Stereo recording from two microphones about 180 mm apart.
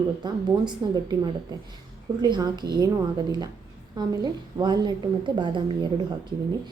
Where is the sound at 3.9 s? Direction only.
25° right (ahead or behind).